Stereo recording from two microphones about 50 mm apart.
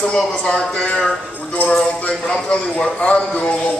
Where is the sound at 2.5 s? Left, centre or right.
Left.